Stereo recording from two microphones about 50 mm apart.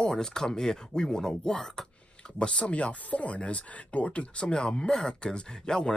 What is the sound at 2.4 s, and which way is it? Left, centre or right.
Speech, left.